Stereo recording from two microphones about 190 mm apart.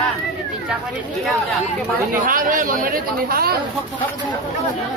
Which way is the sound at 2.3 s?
45° right (ahead or behind).